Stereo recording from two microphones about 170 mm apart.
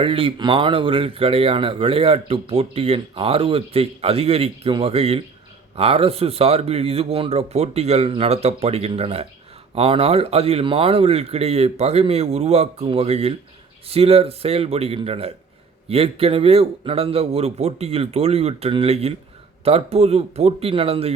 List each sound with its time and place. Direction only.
0.0 s speech: 30° right (ahead or behind)